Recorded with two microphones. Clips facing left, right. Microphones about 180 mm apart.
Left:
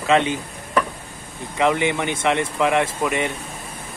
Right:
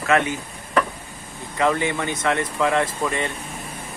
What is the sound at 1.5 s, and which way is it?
Speech, 20° left (ahead or behind).